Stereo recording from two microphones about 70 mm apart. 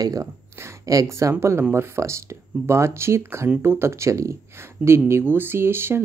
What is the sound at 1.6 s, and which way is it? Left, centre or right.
Speech, right.